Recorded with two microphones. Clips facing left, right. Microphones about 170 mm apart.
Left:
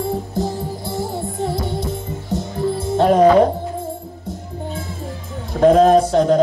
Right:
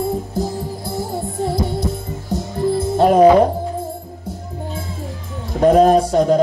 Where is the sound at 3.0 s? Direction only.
10° right (ahead or behind).